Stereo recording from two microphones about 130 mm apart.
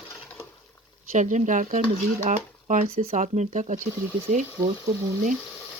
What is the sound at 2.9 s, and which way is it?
Speech, 50° right (ahead or behind).